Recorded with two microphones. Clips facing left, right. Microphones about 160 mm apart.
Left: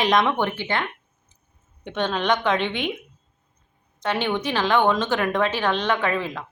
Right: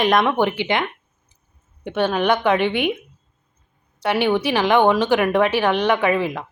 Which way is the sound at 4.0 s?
10° right (ahead or behind).